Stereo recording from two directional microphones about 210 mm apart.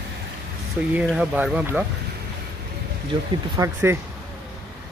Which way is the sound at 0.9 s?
5° right (ahead or behind).